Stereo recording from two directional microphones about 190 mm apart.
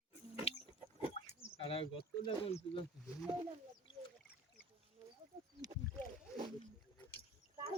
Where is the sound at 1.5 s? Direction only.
30° left (ahead or behind).